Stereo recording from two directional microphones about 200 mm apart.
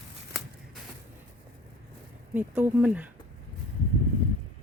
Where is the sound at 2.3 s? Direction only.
10° right (ahead or behind).